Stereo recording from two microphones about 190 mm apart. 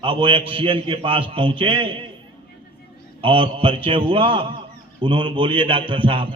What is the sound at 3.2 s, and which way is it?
A man's voice, 25° right (ahead or behind).